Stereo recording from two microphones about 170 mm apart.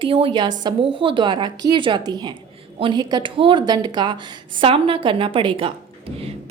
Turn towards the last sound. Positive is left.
turn(degrees=-30)  # may be behind; listen again after turning